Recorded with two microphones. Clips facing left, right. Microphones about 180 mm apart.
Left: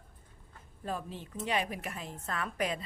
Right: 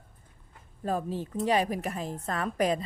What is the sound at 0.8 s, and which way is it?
A woman's voice, 40° right (ahead or behind).